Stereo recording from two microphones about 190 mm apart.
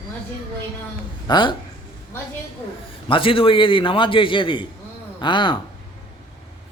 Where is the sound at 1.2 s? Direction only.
25° left (ahead or behind).